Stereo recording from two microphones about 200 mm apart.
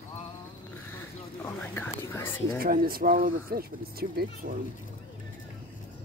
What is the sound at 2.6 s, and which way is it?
Speech, 45° right (ahead or behind).